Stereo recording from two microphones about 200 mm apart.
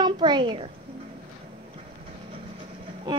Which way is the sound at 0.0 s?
20° right (ahead or behind).